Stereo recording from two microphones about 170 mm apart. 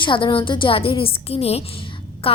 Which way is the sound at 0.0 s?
30° left (ahead or behind).